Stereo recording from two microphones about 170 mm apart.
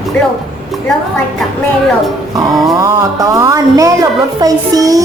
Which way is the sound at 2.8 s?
20° right (ahead or behind).